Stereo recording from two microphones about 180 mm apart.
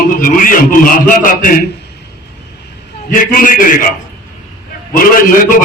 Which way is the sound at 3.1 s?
50° left (ahead or behind).